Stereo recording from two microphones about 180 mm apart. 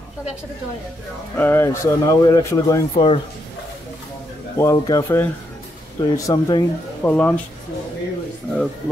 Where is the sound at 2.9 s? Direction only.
35° left (ahead or behind).